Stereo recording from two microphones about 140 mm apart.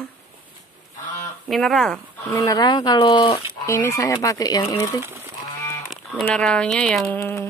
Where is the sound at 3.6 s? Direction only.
20° left (ahead or behind).